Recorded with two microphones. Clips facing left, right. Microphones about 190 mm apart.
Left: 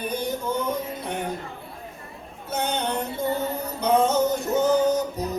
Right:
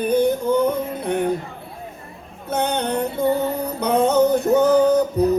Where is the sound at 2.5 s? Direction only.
60° right (ahead or behind).